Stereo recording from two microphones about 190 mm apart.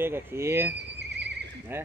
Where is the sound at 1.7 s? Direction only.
10° right (ahead or behind).